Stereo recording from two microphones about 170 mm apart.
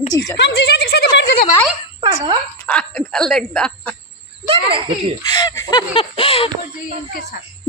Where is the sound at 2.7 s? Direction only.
5° left (ahead or behind).